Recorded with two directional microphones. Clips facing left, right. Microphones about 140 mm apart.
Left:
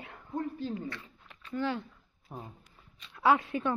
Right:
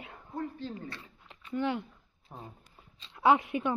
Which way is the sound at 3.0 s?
25° right (ahead or behind).